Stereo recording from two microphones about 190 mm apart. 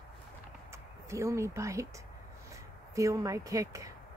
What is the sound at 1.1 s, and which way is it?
Speech, 15° right (ahead or behind).